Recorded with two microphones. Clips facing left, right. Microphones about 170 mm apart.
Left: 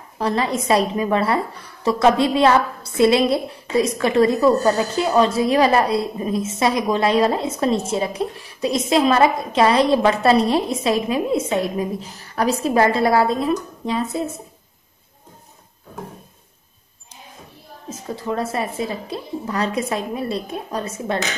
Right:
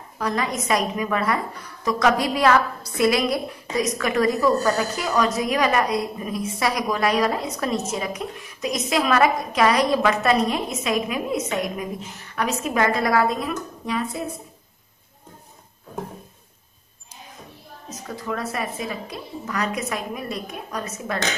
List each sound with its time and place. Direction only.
0.2 s a woman's voice: 30° left (ahead or behind)
17.8 s a woman's voice: 25° left (ahead or behind)